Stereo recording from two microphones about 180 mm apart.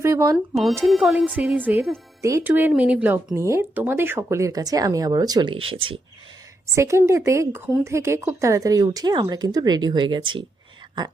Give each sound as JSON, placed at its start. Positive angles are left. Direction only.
{"t": 0.0, "sound": "speech", "side_deg": -15}
{"t": 0.9, "sound": "speech", "side_deg": -5}
{"t": 6.7, "sound": "speech", "side_deg": -15}